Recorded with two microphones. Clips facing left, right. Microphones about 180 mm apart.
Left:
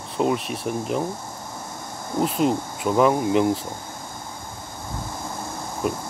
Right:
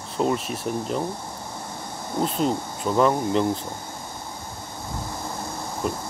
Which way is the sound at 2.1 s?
5° left (ahead or behind).